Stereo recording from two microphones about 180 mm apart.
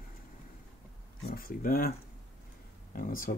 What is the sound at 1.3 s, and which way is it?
Speech, 55° left (ahead or behind).